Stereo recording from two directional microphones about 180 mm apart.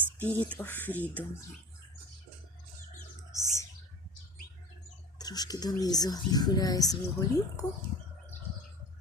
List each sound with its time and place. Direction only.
0.2 s speech: 10° left (ahead or behind)
3.3 s speech: 15° left (ahead or behind)
5.1 s speech: 20° left (ahead or behind)